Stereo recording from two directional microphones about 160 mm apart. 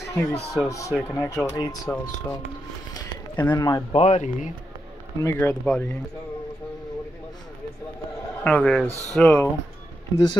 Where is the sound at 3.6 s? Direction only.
25° left (ahead or behind).